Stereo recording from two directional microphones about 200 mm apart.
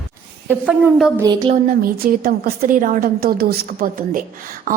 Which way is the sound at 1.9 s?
45° right (ahead or behind).